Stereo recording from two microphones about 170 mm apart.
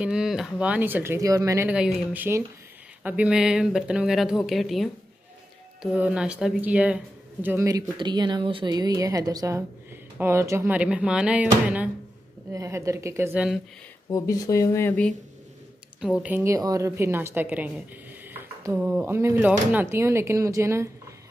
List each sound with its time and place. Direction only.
0.0 s speech: 5° right (ahead or behind)
1.7 s speech: 5° right (ahead or behind)
14.1 s speech: 20° left (ahead or behind)
16.0 s speech: 5° right (ahead or behind)